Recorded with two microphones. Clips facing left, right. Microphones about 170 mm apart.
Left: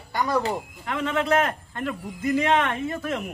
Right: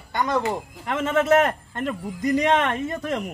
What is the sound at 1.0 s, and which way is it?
Speech, 45° right (ahead or behind).